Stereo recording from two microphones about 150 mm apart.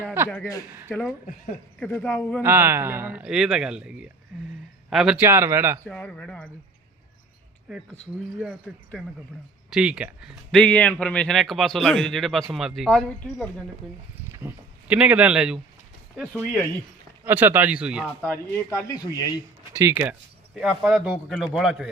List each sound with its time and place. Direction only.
0.0 s speech: 15° right (ahead or behind)
0.9 s a man's voice: centre (ahead or behind)
2.4 s a man's voice: 15° right (ahead or behind)
5.2 s speech: 15° right (ahead or behind)
5.8 s a man's voice: 5° left (ahead or behind)
7.7 s a man's voice: centre (ahead or behind)
9.6 s a man's voice: 5° right (ahead or behind)
10.6 s a man's voice: 10° left (ahead or behind)
14.3 s speech: 10° right (ahead or behind)
18.2 s a man's voice: 15° left (ahead or behind)
18.9 s speech: 25° left (ahead or behind)
19.7 s speech: 20° right (ahead or behind)
20.6 s a man's voice: centre (ahead or behind)